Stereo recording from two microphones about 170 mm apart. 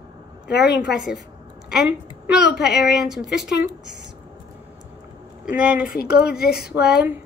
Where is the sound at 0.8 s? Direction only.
5° right (ahead or behind).